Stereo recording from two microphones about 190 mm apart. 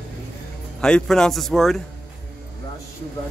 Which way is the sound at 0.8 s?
5° left (ahead or behind).